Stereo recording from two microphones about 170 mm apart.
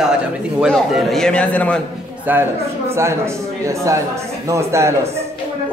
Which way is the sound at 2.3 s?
10° right (ahead or behind).